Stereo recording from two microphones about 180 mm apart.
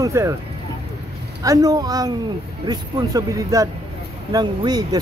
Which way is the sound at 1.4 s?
20° right (ahead or behind).